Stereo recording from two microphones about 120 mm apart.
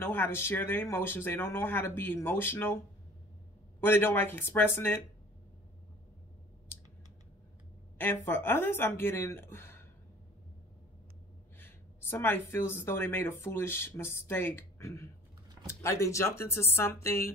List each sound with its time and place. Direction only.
0.0 s speech: 20° left (ahead or behind)
3.8 s speech: 20° left (ahead or behind)
8.0 s a woman's voice: 20° left (ahead or behind)
11.5 s speech: 15° left (ahead or behind)